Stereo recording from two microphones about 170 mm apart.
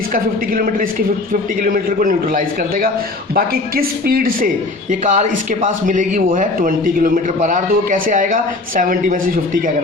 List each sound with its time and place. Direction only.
0.1 s a man's voice: 55° right (ahead or behind)
4.9 s a man's voice: 45° right (ahead or behind)